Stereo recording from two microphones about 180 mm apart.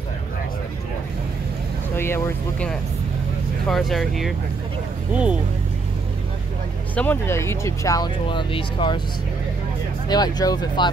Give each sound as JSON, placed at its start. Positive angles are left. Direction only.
{"t": 2.0, "sound": "speech", "side_deg": 15}
{"t": 7.0, "sound": "speech", "side_deg": 10}
{"t": 10.0, "sound": "speech", "side_deg": 20}